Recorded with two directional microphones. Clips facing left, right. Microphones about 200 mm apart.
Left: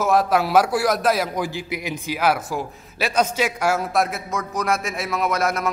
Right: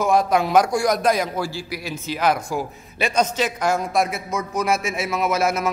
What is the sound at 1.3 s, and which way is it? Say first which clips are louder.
Speech: left 1 dB; 15° left (ahead or behind).